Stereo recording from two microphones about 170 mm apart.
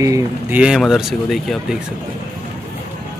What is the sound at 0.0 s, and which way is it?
Speech, 20° right (ahead or behind).